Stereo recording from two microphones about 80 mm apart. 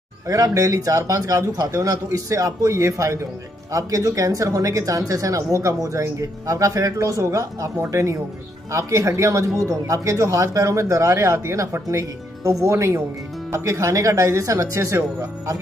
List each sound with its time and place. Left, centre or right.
0.3 s speech: right